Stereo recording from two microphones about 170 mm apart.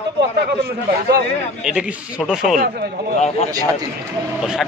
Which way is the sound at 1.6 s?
5° right (ahead or behind).